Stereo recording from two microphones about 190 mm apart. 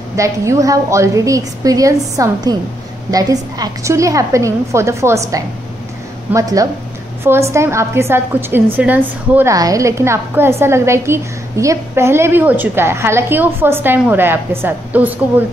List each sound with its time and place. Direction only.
0.1 s a woman's voice: 15° right (ahead or behind)